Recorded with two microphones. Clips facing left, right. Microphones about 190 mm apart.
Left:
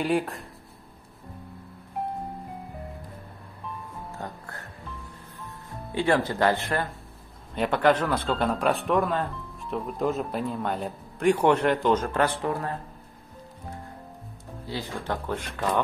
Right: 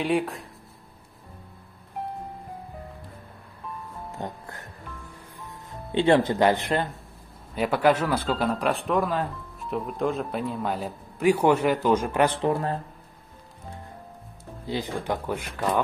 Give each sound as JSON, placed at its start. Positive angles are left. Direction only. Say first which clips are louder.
{"t": 0.0, "sound": "speech", "louder": "right 1 dB", "side_deg": 0}
{"t": 4.2, "sound": "music", "louder": "right 5 dB", "side_deg": -15}
{"t": 5.4, "sound": "speech", "louder": "even", "side_deg": -20}
{"t": 7.5, "sound": "speech", "louder": "even", "side_deg": -5}
{"t": 14.7, "sound": "speech", "louder": "right 3 dB", "side_deg": -15}